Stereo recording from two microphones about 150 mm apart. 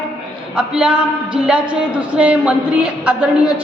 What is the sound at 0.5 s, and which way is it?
A woman's voice, 5° right (ahead or behind).